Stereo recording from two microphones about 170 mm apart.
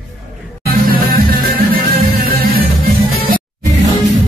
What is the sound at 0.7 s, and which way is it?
Music, 60° right (ahead or behind).